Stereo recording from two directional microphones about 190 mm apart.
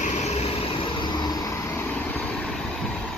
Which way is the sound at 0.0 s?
35° left (ahead or behind).